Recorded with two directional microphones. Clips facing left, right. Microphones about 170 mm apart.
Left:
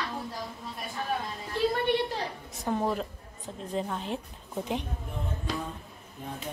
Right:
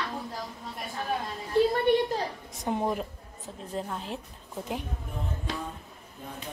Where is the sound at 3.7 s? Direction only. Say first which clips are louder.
Left 2 dB; centre (ahead or behind).